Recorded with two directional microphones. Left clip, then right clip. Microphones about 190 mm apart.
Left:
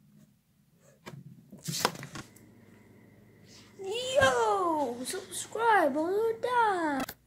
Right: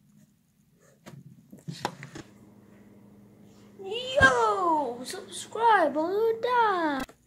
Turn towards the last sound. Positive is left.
turn(degrees=0)  # may be behind; listen again after turning